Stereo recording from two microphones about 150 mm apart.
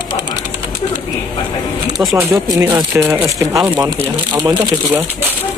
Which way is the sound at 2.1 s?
20° right (ahead or behind).